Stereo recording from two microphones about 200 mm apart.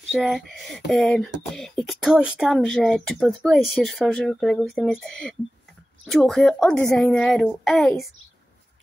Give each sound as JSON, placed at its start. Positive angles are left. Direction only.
{"t": 0.1, "sound": "speech", "side_deg": 0}